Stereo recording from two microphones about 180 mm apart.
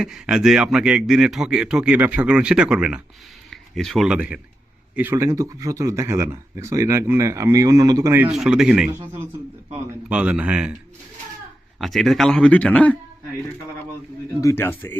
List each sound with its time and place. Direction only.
0.0 s a man's voice: 5° right (ahead or behind)
11.8 s a man's voice: centre (ahead or behind)
14.4 s speech: 15° left (ahead or behind)